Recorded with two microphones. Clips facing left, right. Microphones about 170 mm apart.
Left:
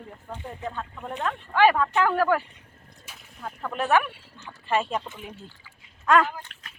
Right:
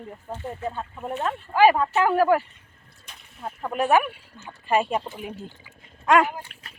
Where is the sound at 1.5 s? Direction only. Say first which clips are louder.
Right 2 dB; 10° right (ahead or behind).